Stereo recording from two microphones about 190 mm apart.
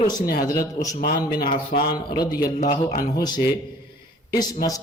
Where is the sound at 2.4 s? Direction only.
45° left (ahead or behind).